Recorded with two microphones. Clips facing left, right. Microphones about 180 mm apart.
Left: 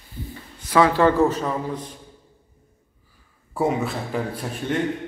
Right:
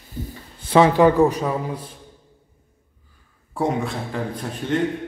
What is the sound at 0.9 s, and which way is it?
Speech, 15° right (ahead or behind).